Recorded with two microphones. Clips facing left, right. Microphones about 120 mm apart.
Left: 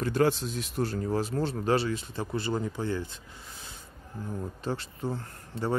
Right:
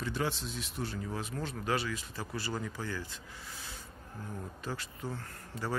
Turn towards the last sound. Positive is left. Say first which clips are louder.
# left 6 dB
turn(degrees=25)  # may be behind; listen again after turning